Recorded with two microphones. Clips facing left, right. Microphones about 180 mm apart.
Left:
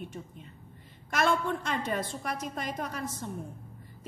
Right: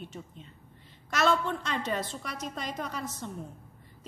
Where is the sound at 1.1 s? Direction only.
50° left (ahead or behind).